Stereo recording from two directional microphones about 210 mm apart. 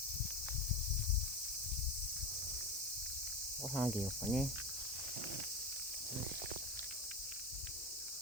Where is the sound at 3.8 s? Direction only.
Centre (ahead or behind).